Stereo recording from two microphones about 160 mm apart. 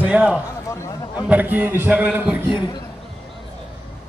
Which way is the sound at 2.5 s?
30° left (ahead or behind).